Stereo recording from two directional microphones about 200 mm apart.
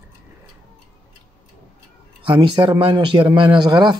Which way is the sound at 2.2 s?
25° right (ahead or behind).